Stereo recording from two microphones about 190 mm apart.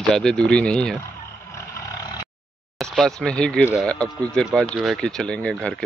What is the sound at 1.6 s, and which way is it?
Roar, 15° left (ahead or behind).